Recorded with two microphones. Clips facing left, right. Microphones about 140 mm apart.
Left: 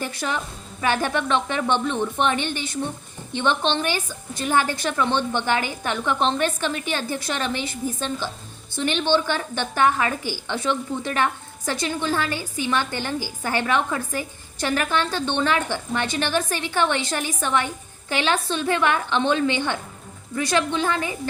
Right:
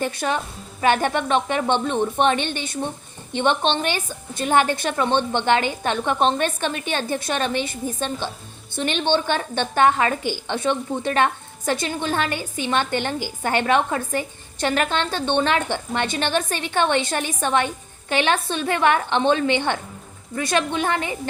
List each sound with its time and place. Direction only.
0.0 s a woman's voice: 20° right (ahead or behind)